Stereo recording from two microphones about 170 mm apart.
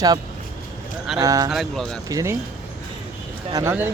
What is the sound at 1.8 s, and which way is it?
Speech, 20° right (ahead or behind).